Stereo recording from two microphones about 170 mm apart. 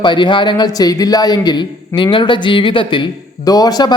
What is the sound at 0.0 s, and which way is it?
Speech, 25° left (ahead or behind).